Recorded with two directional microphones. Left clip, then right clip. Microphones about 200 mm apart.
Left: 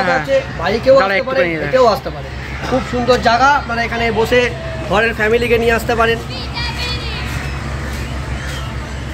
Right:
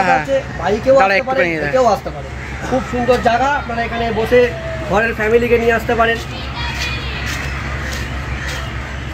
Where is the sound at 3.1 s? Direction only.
25° right (ahead or behind).